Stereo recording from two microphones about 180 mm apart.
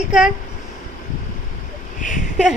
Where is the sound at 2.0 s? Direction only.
45° left (ahead or behind).